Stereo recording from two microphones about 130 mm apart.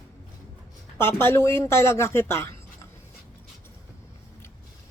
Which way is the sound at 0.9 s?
15° left (ahead or behind).